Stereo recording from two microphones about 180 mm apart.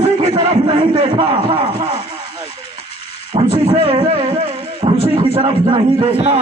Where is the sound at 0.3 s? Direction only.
25° right (ahead or behind).